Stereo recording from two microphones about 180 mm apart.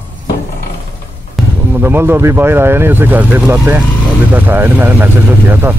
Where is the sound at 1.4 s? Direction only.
Centre (ahead or behind).